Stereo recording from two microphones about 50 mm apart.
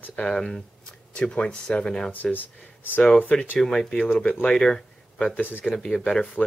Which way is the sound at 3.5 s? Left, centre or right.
Centre.